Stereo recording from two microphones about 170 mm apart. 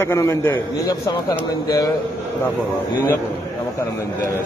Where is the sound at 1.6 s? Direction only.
20° left (ahead or behind).